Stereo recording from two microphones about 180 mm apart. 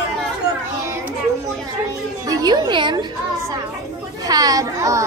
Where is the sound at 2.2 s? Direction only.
20° right (ahead or behind).